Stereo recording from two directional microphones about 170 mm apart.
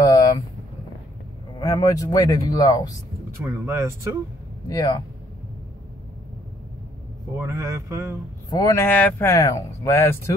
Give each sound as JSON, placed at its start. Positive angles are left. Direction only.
{"t": 0.0, "sound": "vehicle", "side_deg": 20}
{"t": 1.6, "sound": "speech", "side_deg": 20}
{"t": 3.4, "sound": "speech", "side_deg": -15}
{"t": 4.6, "sound": "speech", "side_deg": 25}
{"t": 7.3, "sound": "speech", "side_deg": -15}
{"t": 8.5, "sound": "speech", "side_deg": 25}
{"t": 8.8, "sound": "speech", "side_deg": 10}